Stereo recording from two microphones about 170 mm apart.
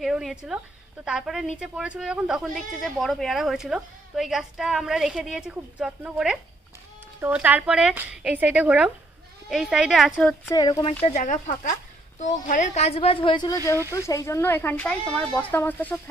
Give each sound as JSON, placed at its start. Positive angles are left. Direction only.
{"t": 0.0, "sound": "speech", "side_deg": 0}
{"t": 10.5, "sound": "speech", "side_deg": 25}